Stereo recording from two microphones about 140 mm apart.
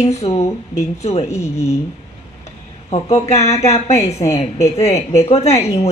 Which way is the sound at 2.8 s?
50° left (ahead or behind).